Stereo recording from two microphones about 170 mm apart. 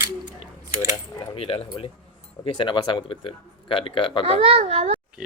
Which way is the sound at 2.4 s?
25° left (ahead or behind).